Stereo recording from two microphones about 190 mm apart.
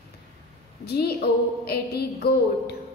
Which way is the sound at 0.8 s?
55° left (ahead or behind).